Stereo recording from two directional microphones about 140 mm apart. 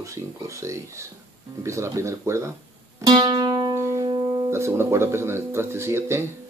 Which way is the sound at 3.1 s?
30° right (ahead or behind).